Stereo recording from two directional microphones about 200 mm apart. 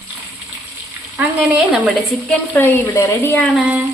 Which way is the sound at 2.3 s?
10° left (ahead or behind).